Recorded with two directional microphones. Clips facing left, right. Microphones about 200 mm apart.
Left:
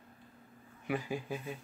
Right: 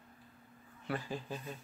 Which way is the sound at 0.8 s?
10° left (ahead or behind).